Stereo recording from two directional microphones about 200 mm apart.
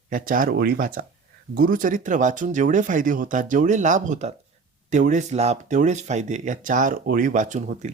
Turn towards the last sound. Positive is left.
turn(degrees=-35)  # may be behind; listen again after turning